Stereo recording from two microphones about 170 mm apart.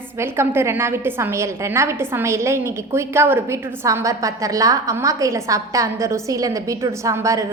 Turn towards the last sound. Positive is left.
turn(degrees=-20)  # may be behind; listen again after turning